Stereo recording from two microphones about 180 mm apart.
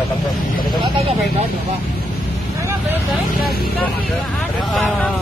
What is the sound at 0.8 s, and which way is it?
Vehicle, 30° right (ahead or behind).